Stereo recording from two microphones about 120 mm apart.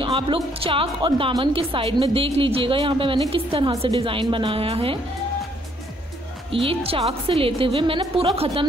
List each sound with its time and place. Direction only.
0.0 s a woman's voice: 50° right (ahead or behind)
6.5 s a woman's voice: 50° right (ahead or behind)